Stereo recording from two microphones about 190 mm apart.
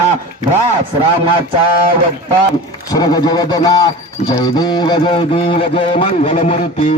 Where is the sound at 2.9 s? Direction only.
20° left (ahead or behind).